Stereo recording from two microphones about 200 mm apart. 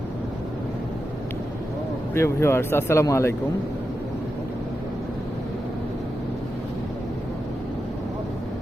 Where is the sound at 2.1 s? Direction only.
15° left (ahead or behind).